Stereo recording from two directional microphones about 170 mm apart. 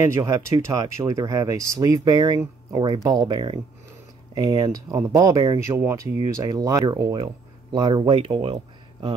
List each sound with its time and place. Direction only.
0.0 s speech: 15° right (ahead or behind)